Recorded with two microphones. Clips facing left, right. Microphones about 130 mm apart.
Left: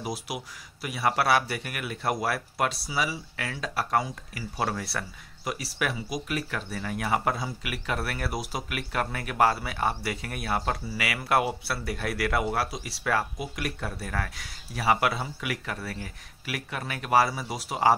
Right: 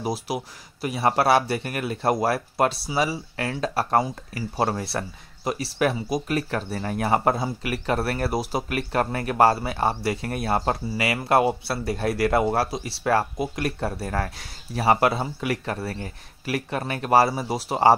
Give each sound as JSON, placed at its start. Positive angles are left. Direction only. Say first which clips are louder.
{"t": 0.0, "sound": "speech", "louder": "right 6 dB", "side_deg": -30}